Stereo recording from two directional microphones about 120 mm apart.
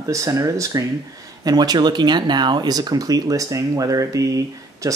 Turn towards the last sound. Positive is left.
turn(degrees=-30)  # may be behind; listen again after turning